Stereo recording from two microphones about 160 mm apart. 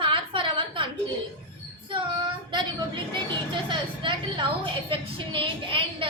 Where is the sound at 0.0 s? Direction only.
30° right (ahead or behind).